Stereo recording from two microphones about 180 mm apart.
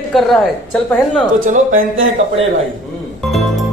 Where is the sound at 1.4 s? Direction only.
50° right (ahead or behind).